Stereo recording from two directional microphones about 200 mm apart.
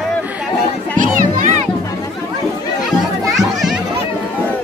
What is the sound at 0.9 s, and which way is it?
Music, 40° right (ahead or behind).